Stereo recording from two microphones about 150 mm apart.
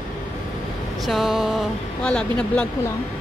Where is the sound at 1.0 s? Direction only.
Centre (ahead or behind).